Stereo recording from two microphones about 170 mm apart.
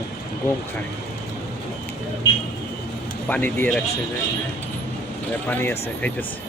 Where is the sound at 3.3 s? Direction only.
10° left (ahead or behind).